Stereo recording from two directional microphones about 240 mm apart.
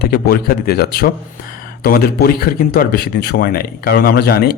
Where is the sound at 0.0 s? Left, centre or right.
Left.